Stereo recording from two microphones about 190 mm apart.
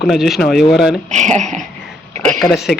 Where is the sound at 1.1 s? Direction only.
40° right (ahead or behind).